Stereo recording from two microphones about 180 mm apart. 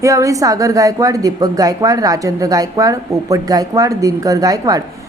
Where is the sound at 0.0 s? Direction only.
15° right (ahead or behind).